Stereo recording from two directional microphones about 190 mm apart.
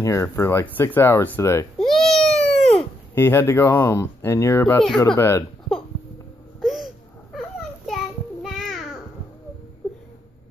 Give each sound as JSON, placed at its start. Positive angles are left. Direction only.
{"t": 0.0, "sound": "speech", "side_deg": 15}
{"t": 1.8, "sound": "baby cry", "side_deg": 5}
{"t": 2.7, "sound": "speech", "side_deg": 10}
{"t": 6.6, "sound": "a sound", "side_deg": 0}